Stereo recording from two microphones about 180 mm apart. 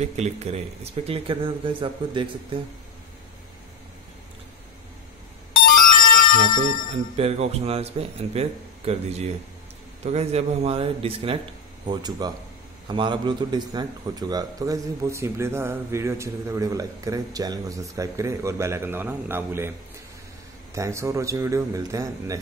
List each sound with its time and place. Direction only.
0.0 s speech: 35° right (ahead or behind)
5.9 s music: 50° left (ahead or behind)
6.3 s a man's voice: 40° right (ahead or behind); by 19.7 s 15° right (ahead or behind)
20.7 s a man's voice: 15° right (ahead or behind)